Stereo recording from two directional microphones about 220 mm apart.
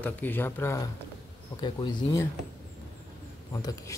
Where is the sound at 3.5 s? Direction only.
15° left (ahead or behind).